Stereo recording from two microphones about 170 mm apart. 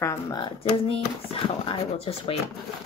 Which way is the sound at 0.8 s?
35° left (ahead or behind).